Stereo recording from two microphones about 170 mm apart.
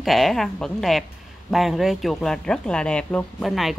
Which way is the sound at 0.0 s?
Centre (ahead or behind).